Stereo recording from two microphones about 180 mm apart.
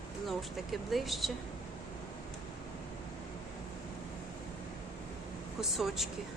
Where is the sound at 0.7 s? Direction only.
Centre (ahead or behind).